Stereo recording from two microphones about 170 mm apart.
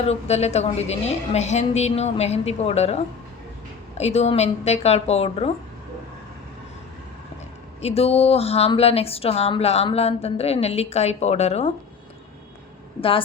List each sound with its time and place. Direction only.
0.0 s a woman's voice: 40° left (ahead or behind)
7.8 s a woman's voice: 35° left (ahead or behind)
13.0 s a woman's voice: 30° left (ahead or behind)